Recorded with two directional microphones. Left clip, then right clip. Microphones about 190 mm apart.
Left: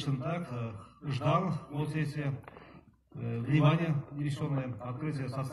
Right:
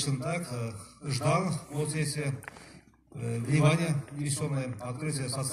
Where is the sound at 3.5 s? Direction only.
40° right (ahead or behind).